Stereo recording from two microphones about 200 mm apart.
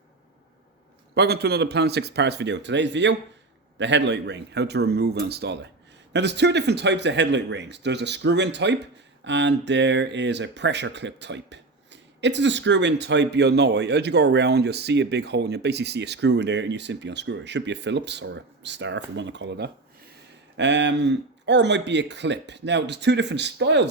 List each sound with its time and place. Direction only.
1.1 s speech: 55° right (ahead or behind)